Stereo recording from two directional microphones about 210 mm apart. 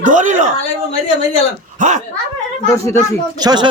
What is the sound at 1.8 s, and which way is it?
Speech, 35° right (ahead or behind).